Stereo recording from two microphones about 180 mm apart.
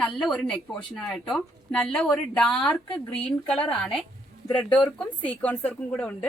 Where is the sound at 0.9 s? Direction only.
5° left (ahead or behind).